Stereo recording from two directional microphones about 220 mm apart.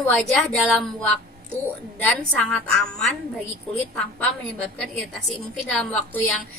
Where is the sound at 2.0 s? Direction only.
5° left (ahead or behind).